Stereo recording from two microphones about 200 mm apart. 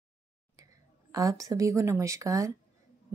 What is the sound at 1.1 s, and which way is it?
A woman's voice, 15° right (ahead or behind).